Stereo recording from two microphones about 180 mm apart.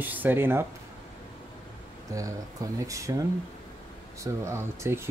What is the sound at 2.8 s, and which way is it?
Speech, 15° right (ahead or behind).